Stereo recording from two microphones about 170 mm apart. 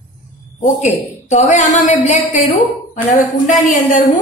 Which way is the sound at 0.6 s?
40° left (ahead or behind).